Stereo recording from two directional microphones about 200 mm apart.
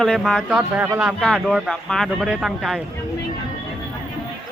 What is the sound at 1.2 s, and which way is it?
Speech, centre (ahead or behind).